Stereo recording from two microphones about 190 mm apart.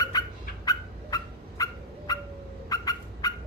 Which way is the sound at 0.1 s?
20° left (ahead or behind).